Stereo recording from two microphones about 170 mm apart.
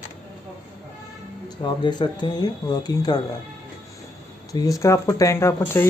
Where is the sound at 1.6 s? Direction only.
30° left (ahead or behind).